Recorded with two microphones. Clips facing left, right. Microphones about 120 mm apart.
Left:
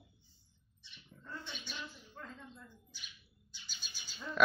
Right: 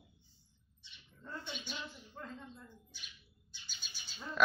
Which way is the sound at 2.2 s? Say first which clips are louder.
Right 2 dB; 25° right (ahead or behind).